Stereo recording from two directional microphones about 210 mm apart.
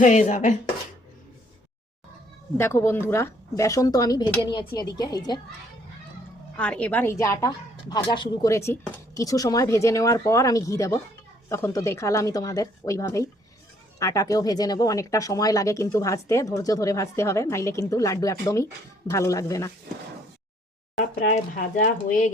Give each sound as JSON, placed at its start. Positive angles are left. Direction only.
{"t": 0.0, "sound": "speech", "side_deg": 35}
{"t": 2.6, "sound": "speech", "side_deg": 10}
{"t": 6.6, "sound": "speech", "side_deg": 5}
{"t": 21.2, "sound": "speech", "side_deg": 40}